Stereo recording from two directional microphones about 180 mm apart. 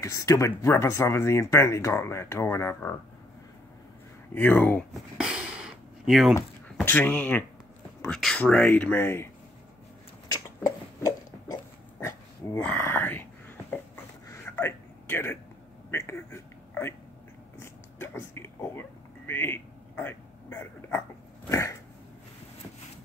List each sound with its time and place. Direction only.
0.0 s speech: 15° left (ahead or behind)
4.3 s speech: 10° left (ahead or behind)
5.1 s a sound: 5° right (ahead or behind)
6.3 s speech: 10° left (ahead or behind)
10.2 s a sound: 20° left (ahead or behind)
21.5 s dog: 15° left (ahead or behind)